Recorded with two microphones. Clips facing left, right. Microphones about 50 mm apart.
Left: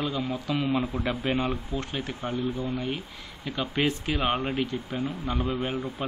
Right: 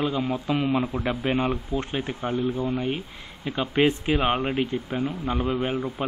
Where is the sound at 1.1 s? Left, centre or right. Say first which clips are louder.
Right 3 dB; centre.